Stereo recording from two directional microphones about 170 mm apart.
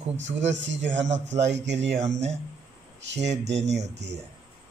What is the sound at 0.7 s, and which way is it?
Speech, 90° right.